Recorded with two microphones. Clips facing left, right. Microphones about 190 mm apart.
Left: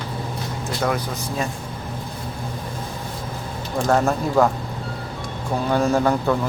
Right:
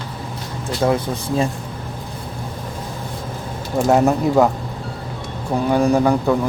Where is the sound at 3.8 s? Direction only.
15° right (ahead or behind).